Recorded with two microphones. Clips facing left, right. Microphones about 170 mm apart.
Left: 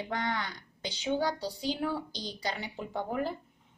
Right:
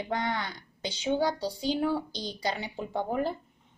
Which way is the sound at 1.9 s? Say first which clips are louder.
Right 4 dB; 30° right (ahead or behind).